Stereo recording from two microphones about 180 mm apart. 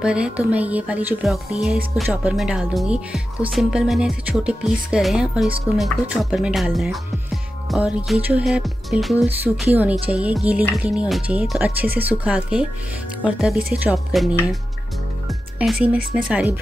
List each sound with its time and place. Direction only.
0.0 s speech: 5° right (ahead or behind)
15.6 s speech: 5° right (ahead or behind)